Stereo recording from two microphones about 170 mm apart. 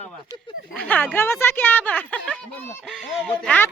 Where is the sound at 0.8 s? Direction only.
10° left (ahead or behind).